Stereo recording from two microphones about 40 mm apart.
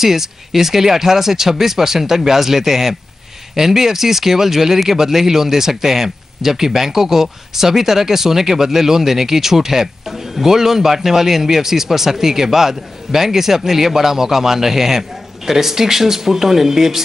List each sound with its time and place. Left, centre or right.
0.0 s speech: centre